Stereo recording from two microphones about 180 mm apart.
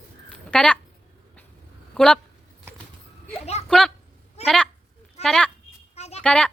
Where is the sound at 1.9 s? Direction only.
5° left (ahead or behind).